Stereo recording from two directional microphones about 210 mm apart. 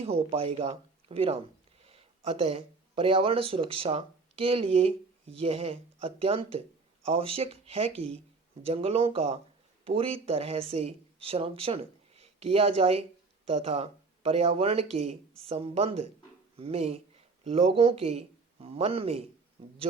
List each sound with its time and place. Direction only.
0.0 s speech: 30° right (ahead or behind)